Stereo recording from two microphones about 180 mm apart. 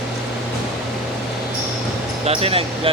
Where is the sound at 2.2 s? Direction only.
30° right (ahead or behind).